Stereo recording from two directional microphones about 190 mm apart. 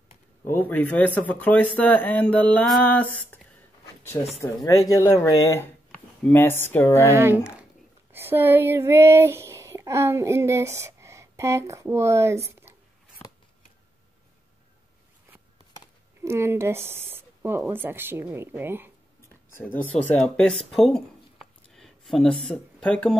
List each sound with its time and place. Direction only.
0.5 s speech: 10° left (ahead or behind)
7.1 s speech: 15° right (ahead or behind)
16.2 s speech: 15° right (ahead or behind)
19.2 s speech: 10° left (ahead or behind)